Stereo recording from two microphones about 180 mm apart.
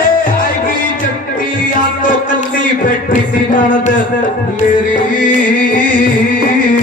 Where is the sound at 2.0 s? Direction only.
50° left (ahead or behind).